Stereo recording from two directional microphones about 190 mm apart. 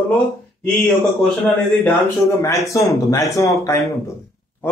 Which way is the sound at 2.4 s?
15° left (ahead or behind).